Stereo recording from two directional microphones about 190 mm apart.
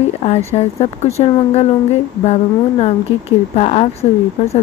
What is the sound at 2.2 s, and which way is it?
Speech, 35° left (ahead or behind).